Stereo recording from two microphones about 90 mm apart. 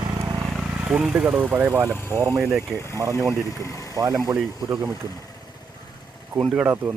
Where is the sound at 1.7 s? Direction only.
35° right (ahead or behind).